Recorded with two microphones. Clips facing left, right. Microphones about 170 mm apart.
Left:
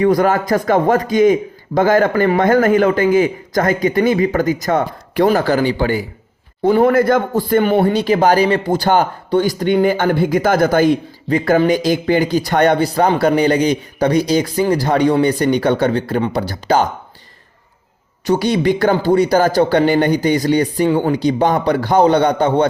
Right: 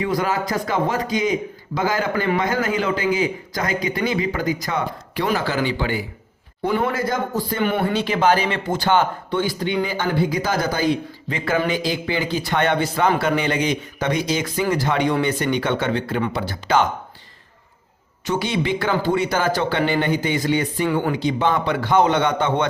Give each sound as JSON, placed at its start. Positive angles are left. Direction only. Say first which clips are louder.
{"t": 0.0, "sound": "a man's voice", "louder": "left 8 dB", "side_deg": 45}
{"t": 6.9, "sound": "a man's voice", "louder": "left 9 dB", "side_deg": 55}
{"t": 7.6, "sound": "a man's voice", "louder": "left 6 dB", "side_deg": 40}
{"t": 11.3, "sound": "a man's voice", "louder": "left 8 dB", "side_deg": 40}
{"t": 18.3, "sound": "a man's voice", "louder": "left 7 dB", "side_deg": 40}